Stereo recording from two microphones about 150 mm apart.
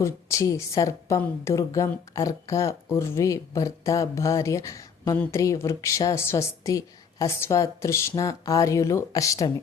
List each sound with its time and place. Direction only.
0.0 s a woman's voice: 20° left (ahead or behind)